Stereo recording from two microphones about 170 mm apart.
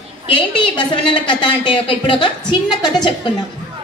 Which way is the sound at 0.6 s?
30° left (ahead or behind).